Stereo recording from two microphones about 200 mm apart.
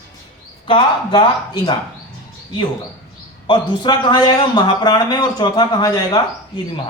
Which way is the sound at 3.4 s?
20° left (ahead or behind).